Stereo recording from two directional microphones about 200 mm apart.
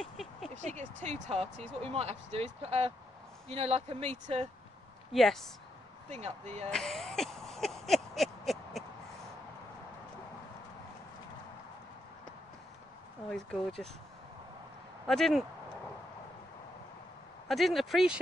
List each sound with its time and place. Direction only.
0.0 s a sound: centre (ahead or behind)
0.6 s speech: 35° right (ahead or behind)
5.1 s speech: centre (ahead or behind)
6.0 s speech: 35° right (ahead or behind)
6.7 s a sound: 5° left (ahead or behind)
13.3 s speech: 5° left (ahead or behind)
15.0 s speech: centre (ahead or behind)
17.5 s speech: centre (ahead or behind)